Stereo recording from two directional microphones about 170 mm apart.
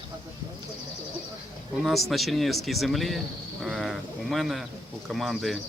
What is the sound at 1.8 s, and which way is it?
Speech, centre (ahead or behind).